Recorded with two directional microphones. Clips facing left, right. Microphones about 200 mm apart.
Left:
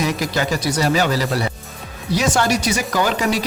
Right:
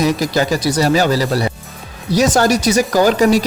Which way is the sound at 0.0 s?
35° right (ahead or behind).